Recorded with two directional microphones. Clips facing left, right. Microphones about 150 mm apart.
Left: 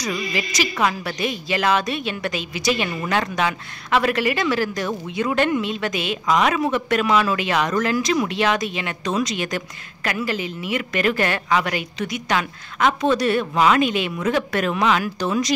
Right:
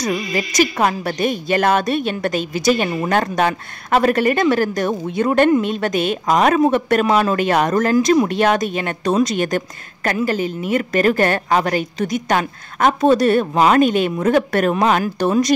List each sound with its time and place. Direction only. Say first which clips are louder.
0.0 s speech: right 5 dB; 45° right (ahead or behind)